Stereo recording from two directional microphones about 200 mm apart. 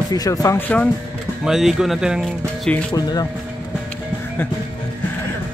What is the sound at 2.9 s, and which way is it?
Speech, 20° left (ahead or behind).